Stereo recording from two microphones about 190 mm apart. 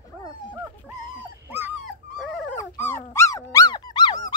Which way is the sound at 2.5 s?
10° left (ahead or behind).